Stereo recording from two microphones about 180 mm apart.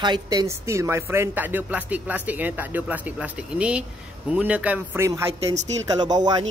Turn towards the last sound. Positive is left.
turn(degrees=-20)  # may be behind; listen again after turning